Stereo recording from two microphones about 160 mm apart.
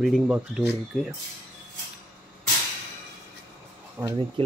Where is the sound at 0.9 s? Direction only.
Centre (ahead or behind).